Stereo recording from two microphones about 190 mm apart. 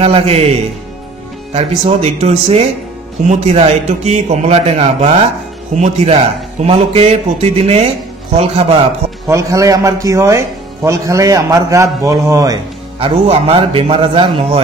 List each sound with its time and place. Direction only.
0.0 s a man's voice: 35° right (ahead or behind)
9.3 s speech: 15° right (ahead or behind)
13.0 s a man's voice: 30° right (ahead or behind)